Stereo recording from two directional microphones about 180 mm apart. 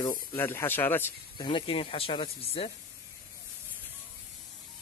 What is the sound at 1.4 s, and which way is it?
Speech, 30° left (ahead or behind).